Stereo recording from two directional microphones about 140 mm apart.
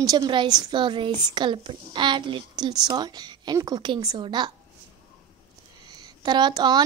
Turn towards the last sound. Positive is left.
turn(degrees=-30)  # may be behind; listen again after turning